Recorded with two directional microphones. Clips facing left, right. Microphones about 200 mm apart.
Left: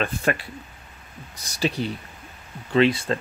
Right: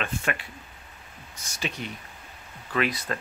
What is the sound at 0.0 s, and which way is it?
Speech, 35° left (ahead or behind).